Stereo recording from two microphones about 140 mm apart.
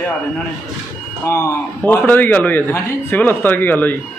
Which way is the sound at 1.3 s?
15° left (ahead or behind).